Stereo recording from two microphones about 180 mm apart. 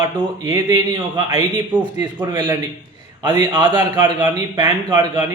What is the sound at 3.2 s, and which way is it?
A man's voice, 25° right (ahead or behind).